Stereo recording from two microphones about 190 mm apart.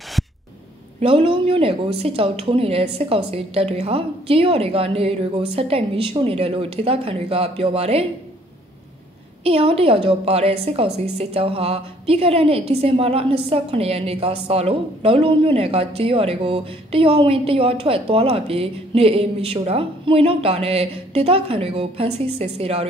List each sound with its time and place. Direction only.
1.0 s a woman's voice: 30° right (ahead or behind)
9.4 s a woman's voice: 30° right (ahead or behind)